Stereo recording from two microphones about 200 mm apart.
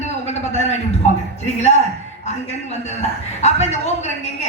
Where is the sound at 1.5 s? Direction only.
35° left (ahead or behind).